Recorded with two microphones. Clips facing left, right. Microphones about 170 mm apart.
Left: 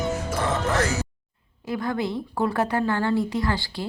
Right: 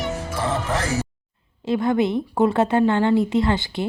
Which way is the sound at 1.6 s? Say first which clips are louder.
Right 7 dB; 25° right (ahead or behind).